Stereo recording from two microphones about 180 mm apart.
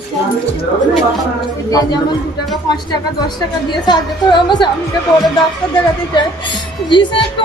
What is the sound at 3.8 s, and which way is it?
Music, 25° left (ahead or behind).